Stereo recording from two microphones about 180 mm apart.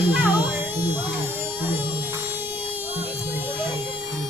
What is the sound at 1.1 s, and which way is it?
Speech, 10° right (ahead or behind).